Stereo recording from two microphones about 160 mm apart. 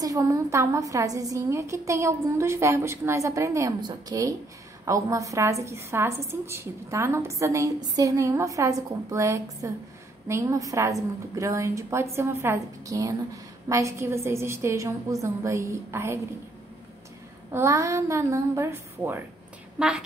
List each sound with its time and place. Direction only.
0.0 s a woman's voice: 20° right (ahead or behind)
17.5 s a woman's voice: 15° right (ahead or behind)